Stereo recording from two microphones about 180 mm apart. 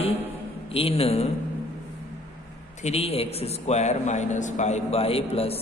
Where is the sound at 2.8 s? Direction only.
35° left (ahead or behind).